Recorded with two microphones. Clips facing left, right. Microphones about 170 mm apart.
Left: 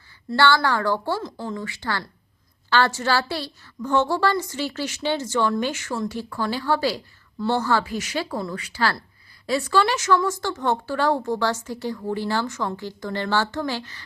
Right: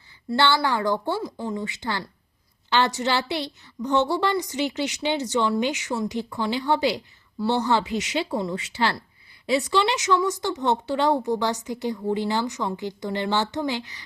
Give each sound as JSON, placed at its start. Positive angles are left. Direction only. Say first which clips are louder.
{"t": 0.3, "sound": "a woman's voice", "louder": "left 2 dB", "side_deg": -20}